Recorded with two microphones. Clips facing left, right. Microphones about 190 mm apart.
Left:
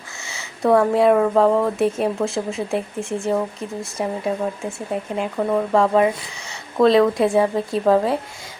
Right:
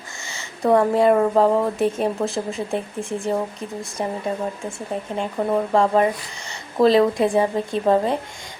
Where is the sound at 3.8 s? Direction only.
5° left (ahead or behind).